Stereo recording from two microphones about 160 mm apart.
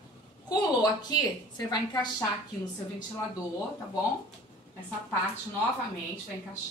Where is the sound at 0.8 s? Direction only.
25° left (ahead or behind).